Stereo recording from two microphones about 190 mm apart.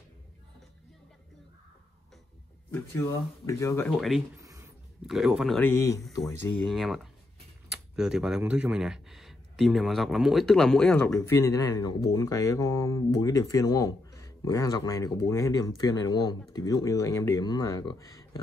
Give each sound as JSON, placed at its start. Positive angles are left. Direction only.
{"t": 2.7, "sound": "speech", "side_deg": 15}
{"t": 3.9, "sound": "speech", "side_deg": 0}
{"t": 4.4, "sound": "a sound", "side_deg": -15}
{"t": 5.0, "sound": "speech", "side_deg": 0}
{"t": 5.6, "sound": "speech", "side_deg": 10}
{"t": 6.2, "sound": "speech", "side_deg": 0}